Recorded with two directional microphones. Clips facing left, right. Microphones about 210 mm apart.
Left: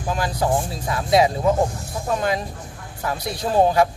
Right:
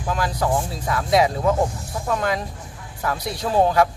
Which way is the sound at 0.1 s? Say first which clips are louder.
Left 1 dB; 25° left (ahead or behind).